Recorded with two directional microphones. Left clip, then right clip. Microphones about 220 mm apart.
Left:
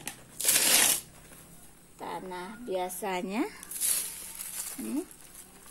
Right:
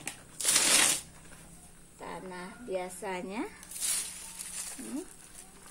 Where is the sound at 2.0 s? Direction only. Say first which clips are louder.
Left 4 dB; 35° left (ahead or behind).